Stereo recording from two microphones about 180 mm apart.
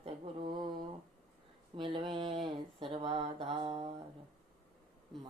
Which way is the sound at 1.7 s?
25° right (ahead or behind).